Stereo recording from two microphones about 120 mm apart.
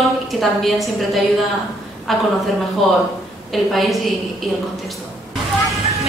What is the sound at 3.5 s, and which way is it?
Speech, centre (ahead or behind).